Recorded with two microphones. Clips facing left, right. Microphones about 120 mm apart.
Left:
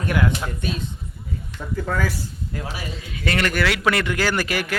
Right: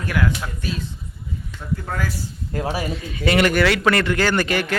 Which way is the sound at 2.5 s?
40° right (ahead or behind).